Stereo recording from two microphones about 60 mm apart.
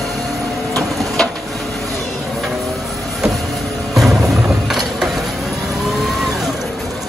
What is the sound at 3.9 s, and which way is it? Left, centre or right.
Vehicle, centre.